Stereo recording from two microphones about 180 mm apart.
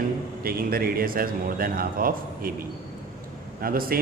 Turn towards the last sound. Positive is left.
turn(degrees=-55)  # may be behind; listen again after turning